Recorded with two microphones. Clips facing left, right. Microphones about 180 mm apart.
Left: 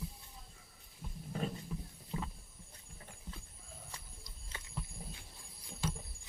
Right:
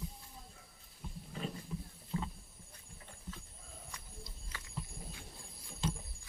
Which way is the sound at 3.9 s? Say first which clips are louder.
Left 2 dB; 30° left (ahead or behind).